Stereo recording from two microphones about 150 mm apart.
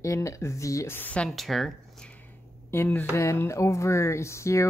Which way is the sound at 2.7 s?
15° left (ahead or behind).